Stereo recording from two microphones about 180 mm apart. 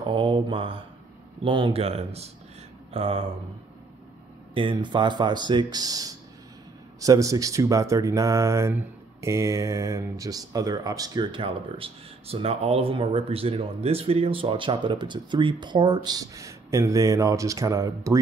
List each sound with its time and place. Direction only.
0.0 s speech: 30° right (ahead or behind)
4.6 s speech: 25° right (ahead or behind)